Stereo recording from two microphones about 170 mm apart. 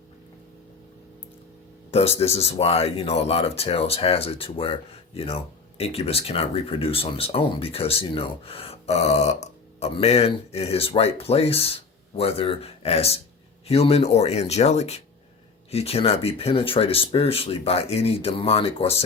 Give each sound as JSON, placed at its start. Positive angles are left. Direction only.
{"t": 1.9, "sound": "speech", "side_deg": 35}